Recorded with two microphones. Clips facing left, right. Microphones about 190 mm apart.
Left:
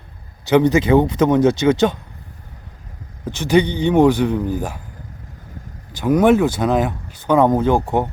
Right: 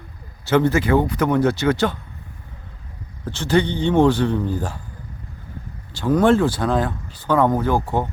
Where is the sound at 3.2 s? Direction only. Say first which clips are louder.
Left 3 dB; 15° left (ahead or behind).